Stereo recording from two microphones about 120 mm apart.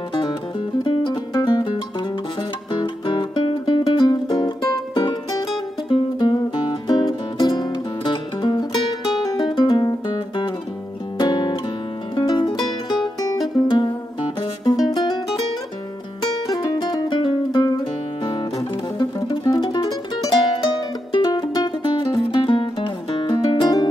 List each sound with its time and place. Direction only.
0.8 s music: 40° left (ahead or behind)
13.2 s music: 30° left (ahead or behind)
16.2 s music: 35° left (ahead or behind)